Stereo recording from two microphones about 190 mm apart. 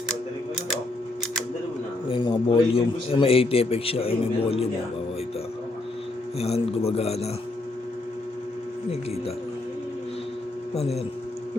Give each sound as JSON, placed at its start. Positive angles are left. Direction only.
{"t": 2.0, "sound": "a man's voice", "side_deg": 25}
{"t": 6.4, "sound": "a man's voice", "side_deg": 30}
{"t": 10.8, "sound": "a man's voice", "side_deg": 35}